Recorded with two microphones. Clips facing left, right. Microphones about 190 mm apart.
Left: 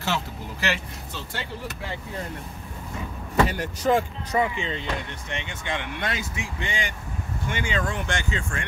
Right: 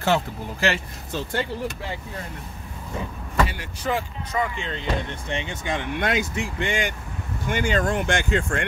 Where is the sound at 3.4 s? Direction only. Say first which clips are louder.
Left 8 dB; 45° left (ahead or behind).